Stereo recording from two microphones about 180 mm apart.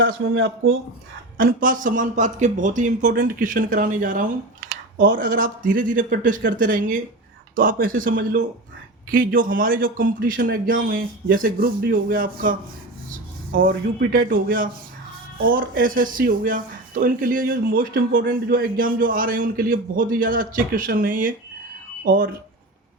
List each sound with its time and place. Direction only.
0.0 s speech: 90° right
1.4 s speech: 50° right (ahead or behind)
13.1 s rub: 50° right (ahead or behind)
14.1 s speech: 50° right (ahead or behind)